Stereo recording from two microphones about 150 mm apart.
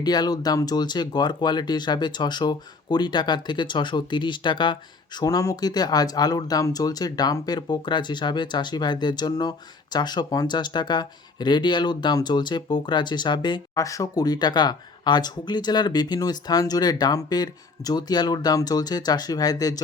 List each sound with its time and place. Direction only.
0.0 s speech: 25° left (ahead or behind)